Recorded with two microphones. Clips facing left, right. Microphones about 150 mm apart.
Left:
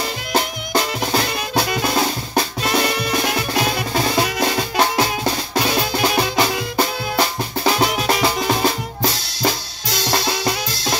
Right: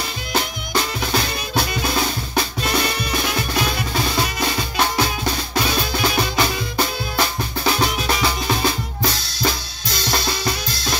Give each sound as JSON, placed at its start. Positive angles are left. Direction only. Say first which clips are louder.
{"t": 0.3, "sound": "music", "louder": "left 3 dB", "side_deg": 40}
{"t": 2.0, "sound": "drum", "louder": "left 2 dB", "side_deg": 40}